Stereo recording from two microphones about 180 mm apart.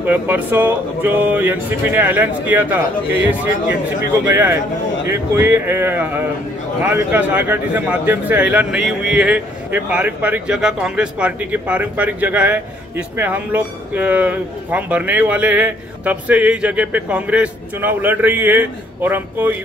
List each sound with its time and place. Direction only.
0.0 s speech: 10° right (ahead or behind)